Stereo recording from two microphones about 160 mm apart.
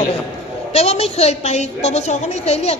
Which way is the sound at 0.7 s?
40° left (ahead or behind).